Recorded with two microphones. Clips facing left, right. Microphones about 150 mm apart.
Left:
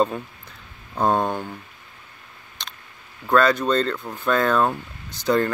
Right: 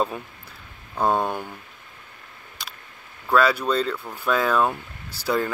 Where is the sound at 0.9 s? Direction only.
15° left (ahead or behind).